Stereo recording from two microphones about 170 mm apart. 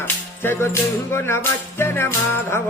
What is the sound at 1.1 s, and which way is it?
Music, 15° left (ahead or behind).